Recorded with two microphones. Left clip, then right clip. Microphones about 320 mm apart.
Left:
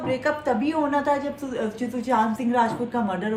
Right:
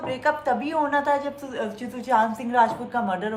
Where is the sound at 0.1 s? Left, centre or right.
Centre.